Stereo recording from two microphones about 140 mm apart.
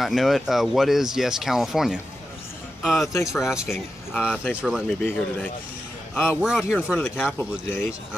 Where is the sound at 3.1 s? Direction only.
20° left (ahead or behind).